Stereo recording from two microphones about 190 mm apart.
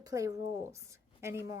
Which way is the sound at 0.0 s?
15° right (ahead or behind).